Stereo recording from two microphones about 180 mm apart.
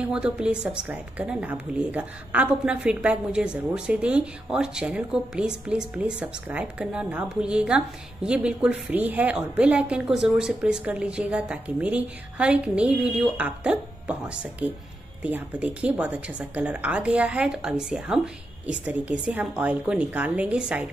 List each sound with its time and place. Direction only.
0.0 s speech: 5° right (ahead or behind)